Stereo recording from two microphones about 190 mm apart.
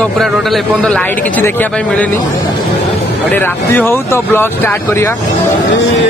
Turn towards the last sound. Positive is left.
turn(degrees=10)  # may be behind; listen again after turning